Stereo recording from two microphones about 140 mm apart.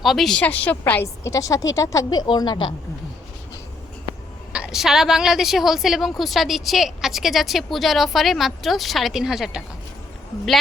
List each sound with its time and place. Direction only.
0.0 s a woman's voice: centre (ahead or behind)
1.0 s a woman's voice: 25° left (ahead or behind)
4.5 s a woman's voice: 5° right (ahead or behind)